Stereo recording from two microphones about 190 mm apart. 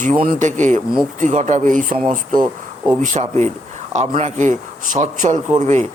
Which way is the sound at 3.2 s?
30° right (ahead or behind).